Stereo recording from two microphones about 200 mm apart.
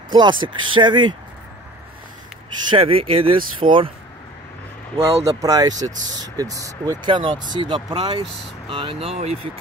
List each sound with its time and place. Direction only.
0.1 s speech: 25° right (ahead or behind)
2.7 s speech: 30° right (ahead or behind)
5.0 s speech: 15° right (ahead or behind)